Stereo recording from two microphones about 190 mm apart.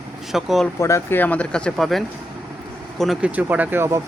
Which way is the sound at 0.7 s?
15° left (ahead or behind).